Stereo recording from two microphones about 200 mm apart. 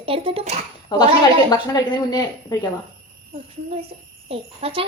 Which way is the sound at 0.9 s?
20° left (ahead or behind).